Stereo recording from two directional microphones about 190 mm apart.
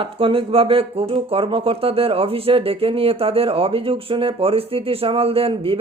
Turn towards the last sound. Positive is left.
turn(degrees=-30)  # may be behind; listen again after turning